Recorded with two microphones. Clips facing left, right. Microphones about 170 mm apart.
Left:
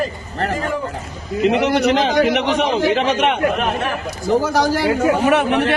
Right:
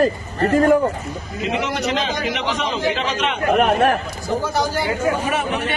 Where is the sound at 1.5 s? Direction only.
65° left (ahead or behind).